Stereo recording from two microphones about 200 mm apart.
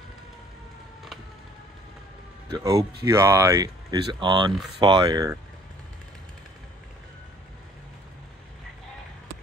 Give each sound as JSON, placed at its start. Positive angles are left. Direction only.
{"t": 2.5, "sound": "speech", "side_deg": -15}